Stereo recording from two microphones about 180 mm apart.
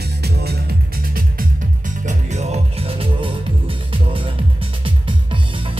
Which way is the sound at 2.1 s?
40° right (ahead or behind).